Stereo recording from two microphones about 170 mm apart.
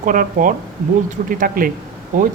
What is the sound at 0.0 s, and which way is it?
Speech, 50° right (ahead or behind).